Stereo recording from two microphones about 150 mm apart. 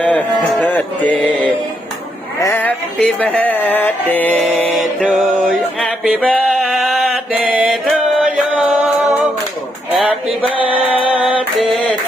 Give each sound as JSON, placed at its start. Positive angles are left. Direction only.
{"t": 0.0, "sound": "mantra", "side_deg": 10}
{"t": 2.4, "sound": "music", "side_deg": 15}
{"t": 6.1, "sound": "a sound", "side_deg": 10}
{"t": 6.5, "sound": "mantra", "side_deg": 0}
{"t": 9.9, "sound": "a sound", "side_deg": -10}
{"t": 10.6, "sound": "music", "side_deg": -40}
{"t": 11.1, "sound": "female singing", "side_deg": -10}
{"t": 11.6, "sound": "mantra", "side_deg": 0}